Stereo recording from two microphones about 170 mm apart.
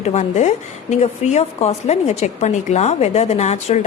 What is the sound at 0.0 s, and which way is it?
A woman's voice, 45° left (ahead or behind).